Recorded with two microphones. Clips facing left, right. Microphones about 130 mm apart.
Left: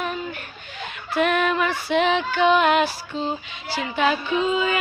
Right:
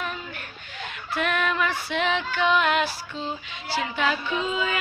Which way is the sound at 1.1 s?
20° left (ahead or behind).